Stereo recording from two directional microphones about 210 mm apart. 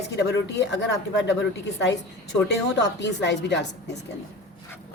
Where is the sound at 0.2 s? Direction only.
55° left (ahead or behind).